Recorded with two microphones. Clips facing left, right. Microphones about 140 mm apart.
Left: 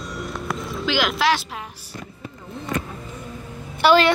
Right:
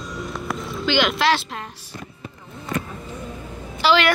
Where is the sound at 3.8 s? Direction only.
55° left (ahead or behind).